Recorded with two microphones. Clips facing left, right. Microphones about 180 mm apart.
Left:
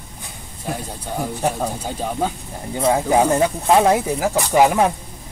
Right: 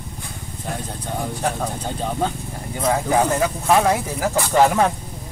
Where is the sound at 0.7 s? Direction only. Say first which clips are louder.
Left 1 dB; 10° left (ahead or behind).